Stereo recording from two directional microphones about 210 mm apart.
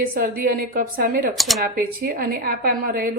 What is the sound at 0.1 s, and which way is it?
A woman's voice, 45° right (ahead or behind).